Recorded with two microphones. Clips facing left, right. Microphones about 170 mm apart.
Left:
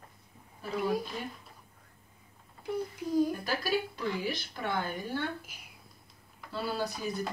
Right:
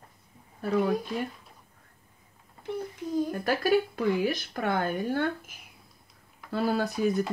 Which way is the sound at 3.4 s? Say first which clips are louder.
Right 7 dB; 55° right (ahead or behind).